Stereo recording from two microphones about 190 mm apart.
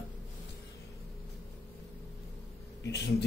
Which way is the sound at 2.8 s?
65° left (ahead or behind).